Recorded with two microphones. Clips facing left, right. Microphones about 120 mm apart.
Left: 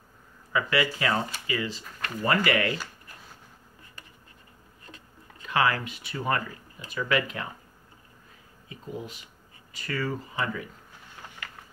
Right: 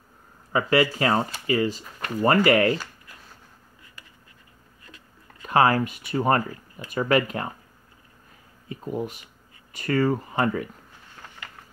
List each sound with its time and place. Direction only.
0.5 s speech: 40° right (ahead or behind)
5.4 s speech: 40° right (ahead or behind)
8.6 s speech: 50° right (ahead or behind)